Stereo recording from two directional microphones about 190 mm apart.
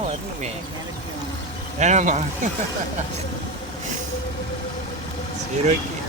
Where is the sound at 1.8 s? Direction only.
40° right (ahead or behind).